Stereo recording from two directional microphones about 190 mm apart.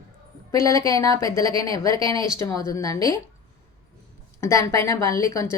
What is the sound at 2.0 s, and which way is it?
Speech, 25° right (ahead or behind).